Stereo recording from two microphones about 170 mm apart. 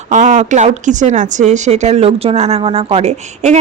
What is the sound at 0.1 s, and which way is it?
Speech, 45° right (ahead or behind).